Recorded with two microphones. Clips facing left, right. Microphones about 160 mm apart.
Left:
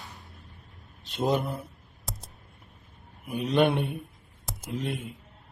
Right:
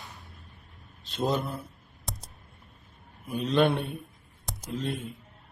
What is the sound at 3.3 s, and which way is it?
A man's voice, 15° left (ahead or behind).